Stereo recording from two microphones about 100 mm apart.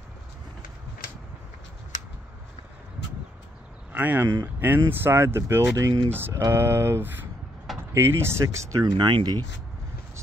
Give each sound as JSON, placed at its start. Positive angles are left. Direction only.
{"t": 3.9, "sound": "speech", "side_deg": -20}
{"t": 8.8, "sound": "speech", "side_deg": -50}